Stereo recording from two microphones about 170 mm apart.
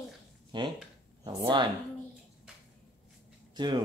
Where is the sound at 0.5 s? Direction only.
30° right (ahead or behind).